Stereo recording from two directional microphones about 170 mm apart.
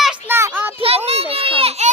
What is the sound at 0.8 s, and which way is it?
Children playing, 35° right (ahead or behind).